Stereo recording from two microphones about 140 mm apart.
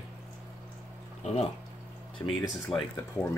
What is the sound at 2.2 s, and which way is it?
Speech, 20° left (ahead or behind).